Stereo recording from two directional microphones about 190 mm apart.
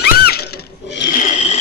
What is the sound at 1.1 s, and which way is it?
Scrape, 45° left (ahead or behind).